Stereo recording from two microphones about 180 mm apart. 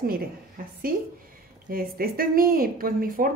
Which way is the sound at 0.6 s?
50° right (ahead or behind).